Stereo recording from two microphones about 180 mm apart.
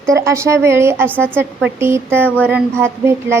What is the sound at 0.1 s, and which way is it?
Speech, 15° right (ahead or behind).